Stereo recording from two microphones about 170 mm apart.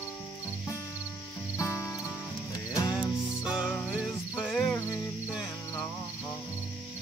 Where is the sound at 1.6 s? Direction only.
15° left (ahead or behind).